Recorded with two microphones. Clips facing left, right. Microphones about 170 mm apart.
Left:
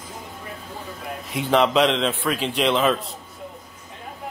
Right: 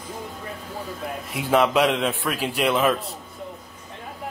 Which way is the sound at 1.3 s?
5° right (ahead or behind).